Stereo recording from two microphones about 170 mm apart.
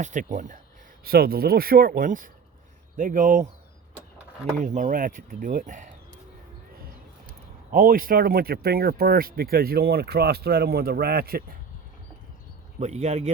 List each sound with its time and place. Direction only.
0.0 s speech: 45° right (ahead or behind)
1.0 s speech: 65° right (ahead or behind); by 3.4 s 50° right (ahead or behind)
4.6 s speech: 45° right (ahead or behind)
7.7 s speech: 55° right (ahead or behind)
12.8 s speech: 40° right (ahead or behind)